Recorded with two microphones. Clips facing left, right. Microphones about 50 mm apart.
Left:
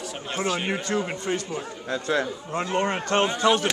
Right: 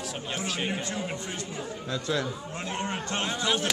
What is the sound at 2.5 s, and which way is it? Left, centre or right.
Speech, left.